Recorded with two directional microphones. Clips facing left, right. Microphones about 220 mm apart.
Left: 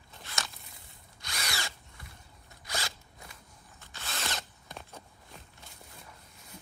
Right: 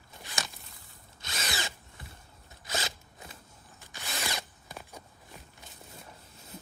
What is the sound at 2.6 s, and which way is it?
Zipper, 20° right (ahead or behind).